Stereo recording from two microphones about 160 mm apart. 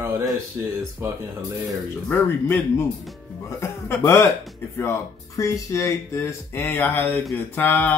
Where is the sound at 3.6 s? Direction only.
15° left (ahead or behind).